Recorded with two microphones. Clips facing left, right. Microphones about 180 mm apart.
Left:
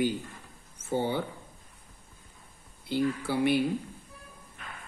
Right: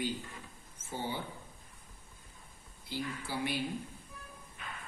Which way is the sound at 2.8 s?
60° left (ahead or behind).